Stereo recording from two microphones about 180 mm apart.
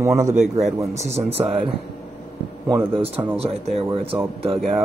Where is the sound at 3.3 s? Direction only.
35° right (ahead or behind).